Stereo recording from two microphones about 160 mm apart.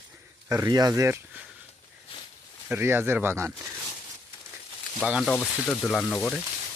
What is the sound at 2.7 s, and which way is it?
Speech, 15° right (ahead or behind).